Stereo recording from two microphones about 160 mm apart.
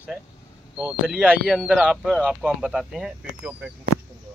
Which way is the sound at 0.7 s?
10° right (ahead or behind).